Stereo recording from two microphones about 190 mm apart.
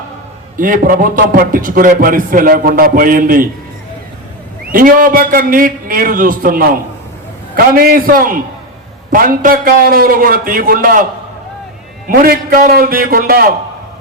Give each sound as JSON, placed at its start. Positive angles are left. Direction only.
{"t": 0.5, "sound": "a man's voice", "side_deg": -45}
{"t": 4.7, "sound": "a man's voice", "side_deg": -45}
{"t": 12.0, "sound": "a man's voice", "side_deg": -50}